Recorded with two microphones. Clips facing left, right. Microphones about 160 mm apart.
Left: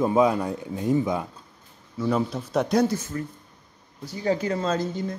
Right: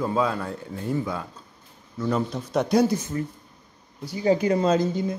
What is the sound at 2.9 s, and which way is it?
Speech, 15° right (ahead or behind).